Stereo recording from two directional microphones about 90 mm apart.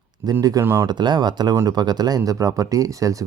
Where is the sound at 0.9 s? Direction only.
55° right (ahead or behind).